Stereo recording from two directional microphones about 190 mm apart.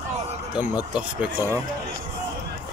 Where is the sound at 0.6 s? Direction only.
10° right (ahead or behind).